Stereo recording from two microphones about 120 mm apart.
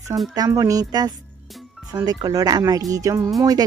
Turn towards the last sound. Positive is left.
turn(degrees=-30)  # may be behind; listen again after turning